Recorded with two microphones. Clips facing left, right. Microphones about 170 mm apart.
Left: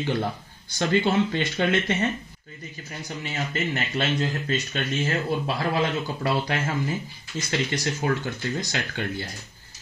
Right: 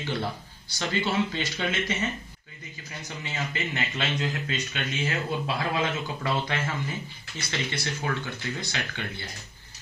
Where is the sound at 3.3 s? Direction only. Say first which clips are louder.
Left 4 dB; 35° left (ahead or behind).